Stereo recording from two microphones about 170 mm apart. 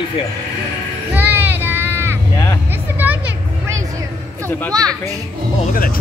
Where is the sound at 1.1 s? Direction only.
10° right (ahead or behind).